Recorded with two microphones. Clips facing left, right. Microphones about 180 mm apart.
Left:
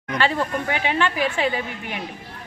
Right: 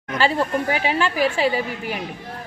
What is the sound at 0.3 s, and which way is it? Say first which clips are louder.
Speech: right 3 dB; 35° right (ahead or behind).